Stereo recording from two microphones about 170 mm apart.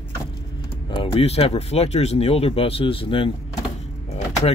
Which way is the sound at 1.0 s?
35° left (ahead or behind).